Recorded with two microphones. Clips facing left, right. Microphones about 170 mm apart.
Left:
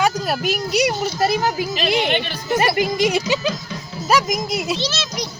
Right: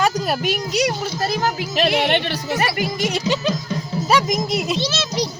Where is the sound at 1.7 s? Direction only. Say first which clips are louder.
Right 5 dB; 65° right (ahead or behind).